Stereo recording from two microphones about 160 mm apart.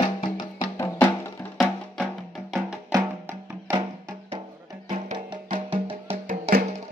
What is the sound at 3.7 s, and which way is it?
Music, 30° right (ahead or behind).